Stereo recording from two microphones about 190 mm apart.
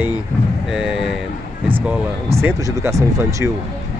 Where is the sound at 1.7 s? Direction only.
10° right (ahead or behind).